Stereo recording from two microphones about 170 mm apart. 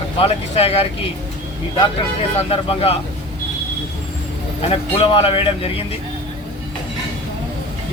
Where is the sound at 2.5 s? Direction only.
35° left (ahead or behind).